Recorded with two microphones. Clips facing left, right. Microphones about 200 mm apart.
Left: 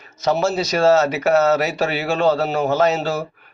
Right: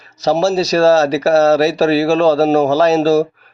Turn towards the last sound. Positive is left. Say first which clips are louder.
# right 7 dB
turn(degrees=-35)  # may be behind; listen again after turning